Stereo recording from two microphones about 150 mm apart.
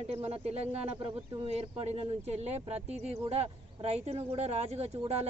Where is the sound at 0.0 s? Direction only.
45° right (ahead or behind).